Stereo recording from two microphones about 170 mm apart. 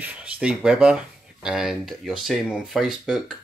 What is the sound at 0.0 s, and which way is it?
Speech, 10° right (ahead or behind).